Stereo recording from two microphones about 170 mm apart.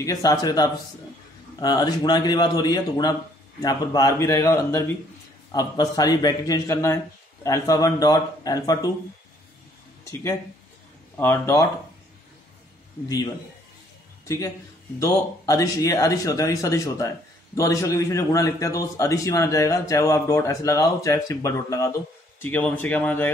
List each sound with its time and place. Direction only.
0.0 s a man's voice: 20° left (ahead or behind)
11.1 s speech: 15° left (ahead or behind)
14.2 s a man's voice: 20° left (ahead or behind)